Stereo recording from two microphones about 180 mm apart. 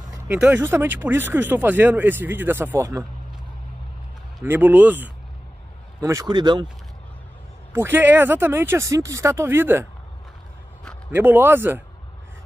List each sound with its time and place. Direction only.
0.3 s speech: 10° right (ahead or behind)
4.5 s speech: 10° right (ahead or behind); by 6.7 s 25° right (ahead or behind)
7.7 s speech: 10° right (ahead or behind)
11.1 s speech: 10° right (ahead or behind)